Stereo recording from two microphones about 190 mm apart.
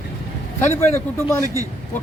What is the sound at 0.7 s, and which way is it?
Speech, 15° left (ahead or behind).